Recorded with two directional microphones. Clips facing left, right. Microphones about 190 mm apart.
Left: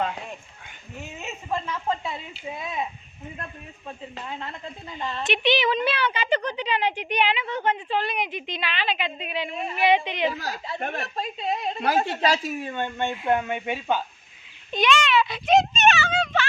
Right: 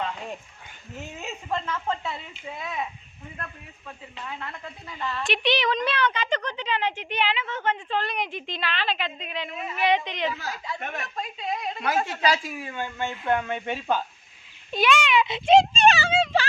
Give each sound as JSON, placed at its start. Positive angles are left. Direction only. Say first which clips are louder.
{"t": 1.2, "sound": "a woman's voice", "louder": "left 1 dB", "side_deg": 5}
{"t": 5.3, "sound": "a woman's voice", "louder": "left 2 dB", "side_deg": 0}
{"t": 9.5, "sound": "a woman's voice", "louder": "left 3 dB", "side_deg": 30}
{"t": 9.8, "sound": "a woman's voice", "louder": "left 3 dB", "side_deg": 10}
{"t": 10.2, "sound": "a woman's voice", "louder": "left 3 dB", "side_deg": 40}
{"t": 14.7, "sound": "a child's voice", "louder": "even", "side_deg": -5}
{"t": 15.4, "sound": "a sound", "louder": "right 3 dB", "side_deg": -30}